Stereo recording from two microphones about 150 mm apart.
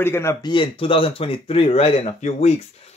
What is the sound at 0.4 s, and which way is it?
Speech, 30° left (ahead or behind).